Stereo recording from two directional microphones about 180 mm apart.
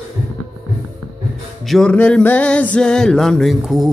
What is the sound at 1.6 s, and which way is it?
Music, centre (ahead or behind).